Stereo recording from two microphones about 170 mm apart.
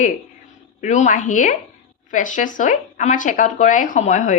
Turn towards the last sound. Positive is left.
turn(degrees=45)  # may be behind; listen again after turning